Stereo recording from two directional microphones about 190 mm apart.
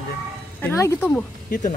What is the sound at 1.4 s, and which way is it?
Speech, 45° left (ahead or behind).